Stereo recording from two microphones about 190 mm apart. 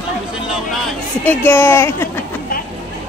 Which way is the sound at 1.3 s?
10° left (ahead or behind).